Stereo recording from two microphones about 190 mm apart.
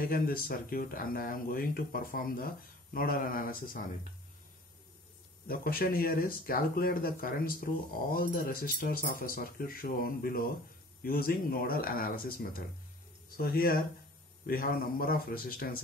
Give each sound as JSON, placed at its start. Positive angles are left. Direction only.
{"t": 0.0, "sound": "speech", "side_deg": 50}
{"t": 5.5, "sound": "speech", "side_deg": 50}